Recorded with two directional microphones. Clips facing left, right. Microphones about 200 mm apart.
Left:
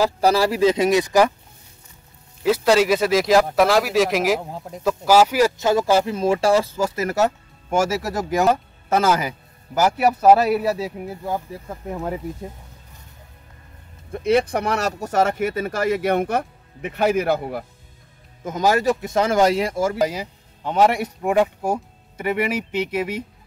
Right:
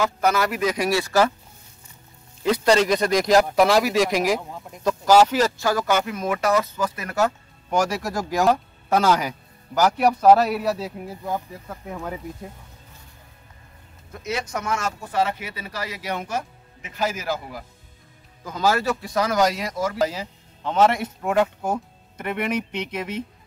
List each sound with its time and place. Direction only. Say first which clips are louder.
0.0 s a man's voice: left 4 dB; 30° left (ahead or behind); by 1.3 s 15° left (ahead or behind)
2.4 s speech: left 2 dB; 5° left (ahead or behind)
4.4 s speech: left 4 dB; 35° left (ahead or behind)
4.8 s speech: even; 5° left (ahead or behind)
5.6 s a man's voice: left 4 dB; 25° left (ahead or behind)
7.7 s speech: left 2 dB; 5° left (ahead or behind)
14.8 s speech: left 4 dB; 40° left (ahead or behind); by 17.6 s 60° left (ahead or behind)
18.4 s a man's voice: left 3 dB; 20° left (ahead or behind)
20.0 s speech: left 2 dB; 10° left (ahead or behind)